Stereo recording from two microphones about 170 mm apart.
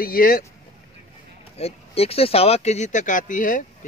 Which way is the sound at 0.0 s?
60° left (ahead or behind).